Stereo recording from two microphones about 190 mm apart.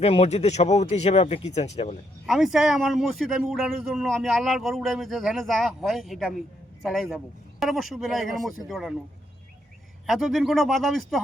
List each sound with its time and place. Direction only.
0.0 s speech: 35° left (ahead or behind)
2.2 s a man's voice: centre (ahead or behind)
10.1 s a man's voice: centre (ahead or behind)